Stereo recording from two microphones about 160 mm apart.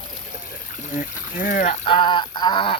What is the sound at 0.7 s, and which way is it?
Speech, 55° left (ahead or behind).